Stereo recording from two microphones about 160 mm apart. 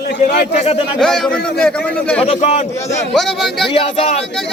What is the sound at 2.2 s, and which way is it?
Speech, 40° left (ahead or behind).